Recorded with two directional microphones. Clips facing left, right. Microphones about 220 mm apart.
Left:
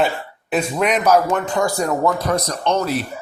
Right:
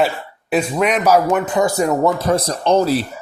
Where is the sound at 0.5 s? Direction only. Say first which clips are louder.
Right 2 dB; 5° right (ahead or behind).